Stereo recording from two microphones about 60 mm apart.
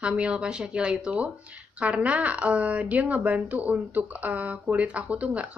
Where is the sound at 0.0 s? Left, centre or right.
Centre.